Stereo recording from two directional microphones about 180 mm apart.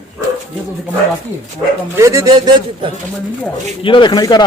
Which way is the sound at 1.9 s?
15° right (ahead or behind).